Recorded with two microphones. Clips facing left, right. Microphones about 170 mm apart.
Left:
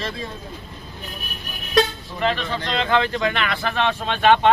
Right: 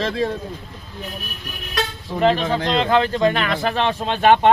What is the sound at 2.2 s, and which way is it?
Speech, 40° right (ahead or behind).